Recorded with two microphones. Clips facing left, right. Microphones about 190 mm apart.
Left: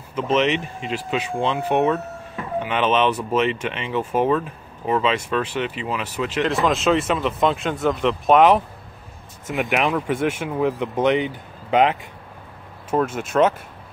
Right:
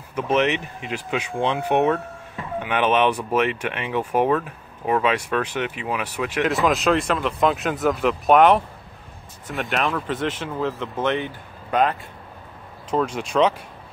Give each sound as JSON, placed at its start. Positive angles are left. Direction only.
{"t": 0.4, "sound": "speech", "side_deg": -65}
{"t": 1.1, "sound": "speech", "side_deg": -15}
{"t": 6.4, "sound": "speech", "side_deg": 0}
{"t": 9.7, "sound": "speech", "side_deg": 15}
{"t": 12.9, "sound": "speech", "side_deg": 5}